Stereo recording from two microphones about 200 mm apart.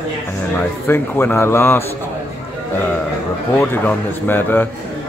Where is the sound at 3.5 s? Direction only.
10° left (ahead or behind).